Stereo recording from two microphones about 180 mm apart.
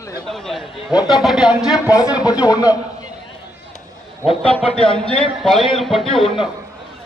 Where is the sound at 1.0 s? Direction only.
25° left (ahead or behind).